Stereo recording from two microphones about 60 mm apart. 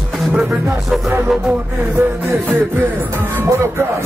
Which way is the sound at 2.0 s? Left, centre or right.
Right.